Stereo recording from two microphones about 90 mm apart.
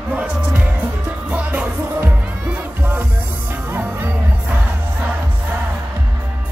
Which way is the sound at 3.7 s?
20° right (ahead or behind).